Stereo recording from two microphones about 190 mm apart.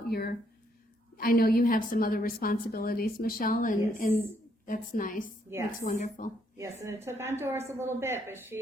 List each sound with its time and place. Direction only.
0.1 s a woman's voice: 55° left (ahead or behind)
5.5 s a woman's voice: 10° right (ahead or behind)
5.8 s a woman's voice: 45° left (ahead or behind)
6.6 s a woman's voice: 15° right (ahead or behind)